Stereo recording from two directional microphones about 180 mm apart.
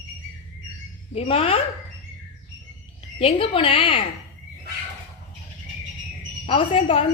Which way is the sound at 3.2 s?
30° left (ahead or behind).